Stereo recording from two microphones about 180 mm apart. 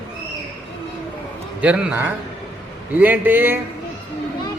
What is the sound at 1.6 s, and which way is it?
A man's voice, 10° right (ahead or behind).